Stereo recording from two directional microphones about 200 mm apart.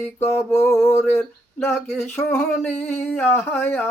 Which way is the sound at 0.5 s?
15° left (ahead or behind).